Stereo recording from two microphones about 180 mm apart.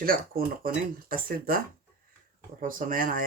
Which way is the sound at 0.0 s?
55° right (ahead or behind).